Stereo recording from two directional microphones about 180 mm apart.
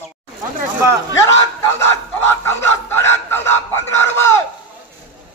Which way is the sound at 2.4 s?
15° left (ahead or behind).